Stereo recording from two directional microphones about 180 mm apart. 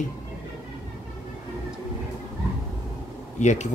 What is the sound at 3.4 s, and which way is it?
Speech, 40° left (ahead or behind).